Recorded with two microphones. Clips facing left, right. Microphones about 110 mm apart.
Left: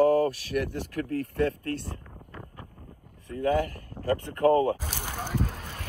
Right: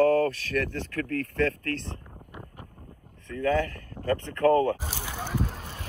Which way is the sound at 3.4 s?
20° left (ahead or behind).